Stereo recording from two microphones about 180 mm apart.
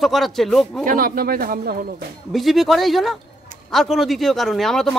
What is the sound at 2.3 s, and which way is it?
Speech, centre (ahead or behind).